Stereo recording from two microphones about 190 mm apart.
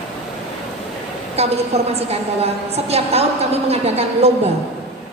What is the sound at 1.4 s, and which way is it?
Speech, 35° right (ahead or behind).